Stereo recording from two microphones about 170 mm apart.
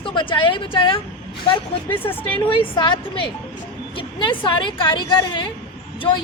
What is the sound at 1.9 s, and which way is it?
Speech, 10° left (ahead or behind).